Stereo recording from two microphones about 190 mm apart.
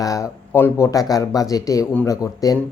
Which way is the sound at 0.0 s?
15° left (ahead or behind).